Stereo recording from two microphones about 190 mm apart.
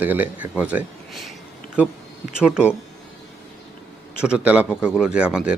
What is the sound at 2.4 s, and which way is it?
Speech, 5° right (ahead or behind).